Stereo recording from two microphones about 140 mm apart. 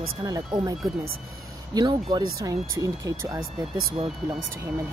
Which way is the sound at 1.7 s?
35° right (ahead or behind).